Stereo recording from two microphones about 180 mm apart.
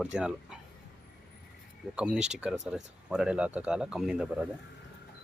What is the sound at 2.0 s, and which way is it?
Speech, 5° right (ahead or behind).